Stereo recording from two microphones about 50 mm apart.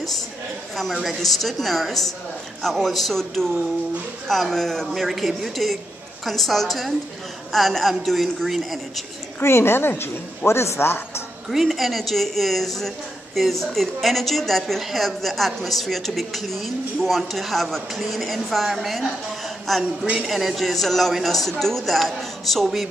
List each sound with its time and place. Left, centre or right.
1.0 s a woman's voice: centre
9.4 s a woman's voice: left
11.5 s a woman's voice: centre